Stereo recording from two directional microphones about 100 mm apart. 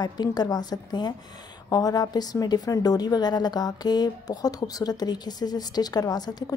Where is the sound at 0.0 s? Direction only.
45° left (ahead or behind).